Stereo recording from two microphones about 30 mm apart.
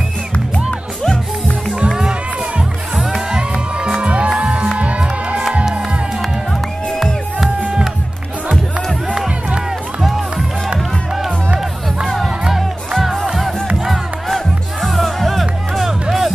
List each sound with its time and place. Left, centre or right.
2.0 s music: right
3.2 s music: right
4.0 s music: right
14.3 s music: centre